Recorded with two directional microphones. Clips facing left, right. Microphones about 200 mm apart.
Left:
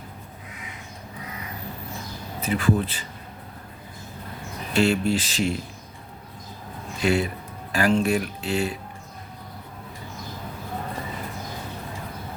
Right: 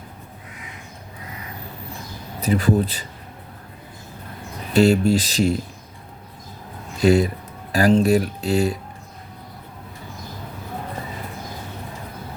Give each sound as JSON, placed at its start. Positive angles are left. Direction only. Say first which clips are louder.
{"t": 2.4, "sound": "speech", "louder": "right 4 dB", "side_deg": -40}
{"t": 4.7, "sound": "speech", "louder": "right 5 dB", "side_deg": -40}
{"t": 7.0, "sound": "speech", "louder": "right 6 dB", "side_deg": -40}